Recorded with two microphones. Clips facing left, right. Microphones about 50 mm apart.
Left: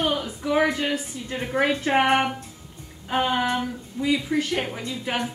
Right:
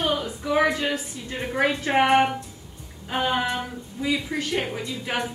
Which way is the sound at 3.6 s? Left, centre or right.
Centre.